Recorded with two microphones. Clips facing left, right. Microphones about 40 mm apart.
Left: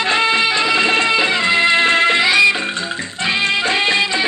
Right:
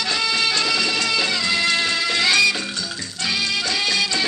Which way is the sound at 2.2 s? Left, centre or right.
Left.